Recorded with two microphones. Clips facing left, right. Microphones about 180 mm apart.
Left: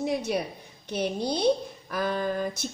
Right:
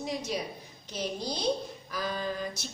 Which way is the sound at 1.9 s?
55° left (ahead or behind).